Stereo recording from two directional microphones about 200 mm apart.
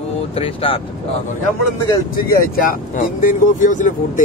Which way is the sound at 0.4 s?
30° left (ahead or behind).